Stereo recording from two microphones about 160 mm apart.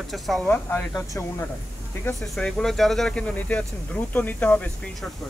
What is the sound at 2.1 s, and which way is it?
Speech, 5° left (ahead or behind).